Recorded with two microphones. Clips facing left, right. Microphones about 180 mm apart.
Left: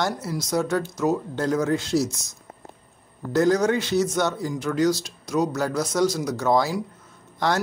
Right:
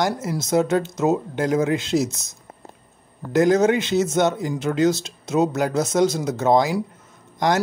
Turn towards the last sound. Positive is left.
turn(degrees=-15)  # may be behind; listen again after turning